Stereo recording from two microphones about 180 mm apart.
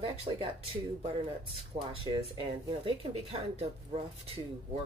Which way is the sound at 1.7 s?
35° right (ahead or behind).